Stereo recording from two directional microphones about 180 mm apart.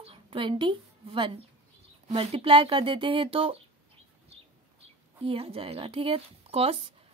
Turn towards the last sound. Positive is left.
turn(degrees=-35)  # may be behind; listen again after turning